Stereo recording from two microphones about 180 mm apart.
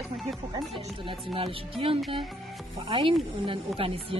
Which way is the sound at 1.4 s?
30° right (ahead or behind).